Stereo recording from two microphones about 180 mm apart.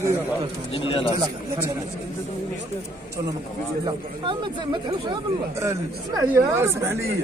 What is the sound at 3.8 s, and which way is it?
A man's voice, 25° right (ahead or behind).